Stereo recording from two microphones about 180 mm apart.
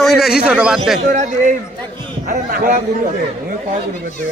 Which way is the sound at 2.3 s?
50° right (ahead or behind).